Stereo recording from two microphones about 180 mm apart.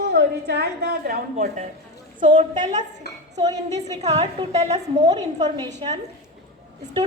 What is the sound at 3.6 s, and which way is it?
A woman's voice, 40° right (ahead or behind).